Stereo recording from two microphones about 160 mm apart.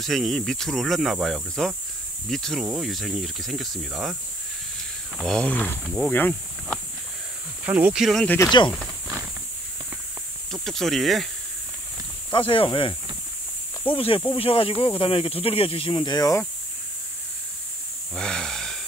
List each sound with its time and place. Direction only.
0.0 s speech: centre (ahead or behind)
7.6 s speech: 10° right (ahead or behind)
8.5 s speech: 30° left (ahead or behind)
10.5 s speech: centre (ahead or behind)
12.3 s speech: 35° left (ahead or behind)
18.1 s a sound: 5° left (ahead or behind)